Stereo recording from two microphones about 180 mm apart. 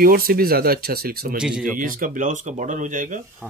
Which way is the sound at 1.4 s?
5° right (ahead or behind).